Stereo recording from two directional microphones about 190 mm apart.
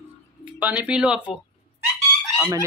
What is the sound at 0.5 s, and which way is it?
Speech, 5° right (ahead or behind).